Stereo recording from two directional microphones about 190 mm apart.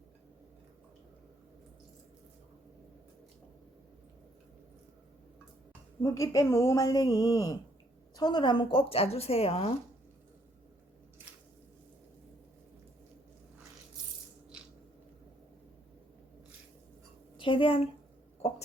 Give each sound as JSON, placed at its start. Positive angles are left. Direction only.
{"t": 6.0, "sound": "speech", "side_deg": 15}
{"t": 14.5, "sound": "a sound", "side_deg": -5}
{"t": 17.4, "sound": "speech", "side_deg": 30}